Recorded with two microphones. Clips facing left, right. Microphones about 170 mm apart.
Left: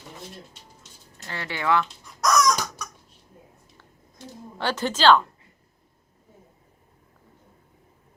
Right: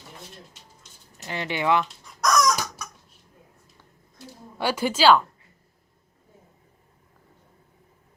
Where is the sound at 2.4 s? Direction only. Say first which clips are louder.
Left 1 dB; 5° right (ahead or behind).